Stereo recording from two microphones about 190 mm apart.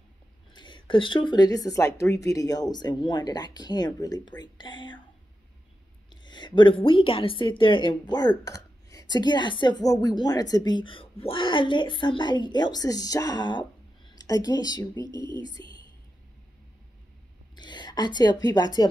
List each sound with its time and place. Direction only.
0.5 s a woman's voice: 25° left (ahead or behind)
6.0 s a woman's voice: 25° left (ahead or behind)
15.0 s speech: 25° right (ahead or behind)
17.6 s a woman's voice: 25° left (ahead or behind)